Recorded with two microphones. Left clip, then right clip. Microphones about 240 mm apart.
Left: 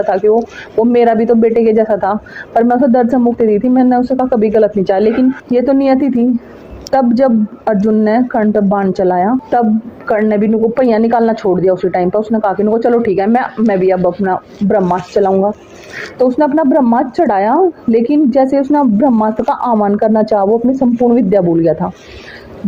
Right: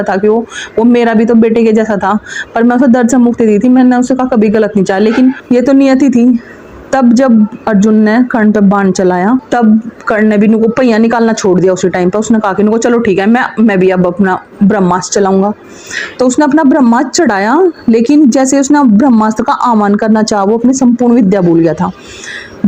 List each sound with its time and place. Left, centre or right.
0.0 s speech: right
7.2 s speech: right
21.2 s speech: right